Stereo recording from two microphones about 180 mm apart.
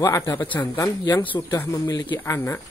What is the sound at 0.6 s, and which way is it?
Speech, 20° left (ahead or behind).